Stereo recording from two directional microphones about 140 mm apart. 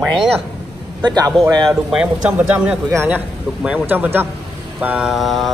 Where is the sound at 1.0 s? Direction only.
30° right (ahead or behind).